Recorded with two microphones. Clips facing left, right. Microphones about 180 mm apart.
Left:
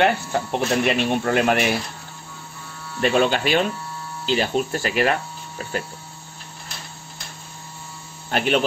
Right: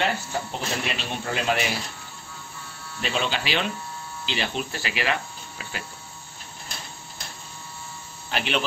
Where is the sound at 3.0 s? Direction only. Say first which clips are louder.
Left 9 dB; 55° left (ahead or behind).